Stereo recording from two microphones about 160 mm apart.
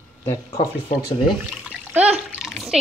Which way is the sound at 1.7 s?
10° right (ahead or behind).